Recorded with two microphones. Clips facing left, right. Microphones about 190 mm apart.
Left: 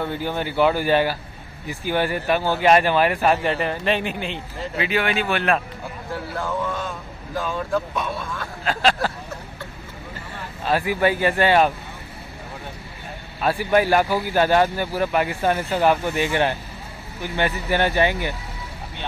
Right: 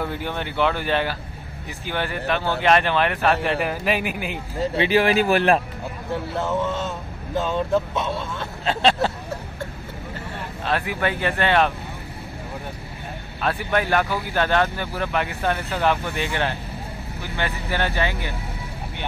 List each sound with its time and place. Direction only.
0.0 s speech: centre (ahead or behind)
3.4 s a man's voice: 5° right (ahead or behind)
4.7 s speech: 35° right (ahead or behind)
6.3 s speech: 25° right (ahead or behind)
10.6 s speech: 5° left (ahead or behind)
13.4 s speech: 5° left (ahead or behind)